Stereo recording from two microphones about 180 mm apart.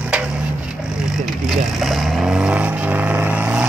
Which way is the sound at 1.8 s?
Centre (ahead or behind).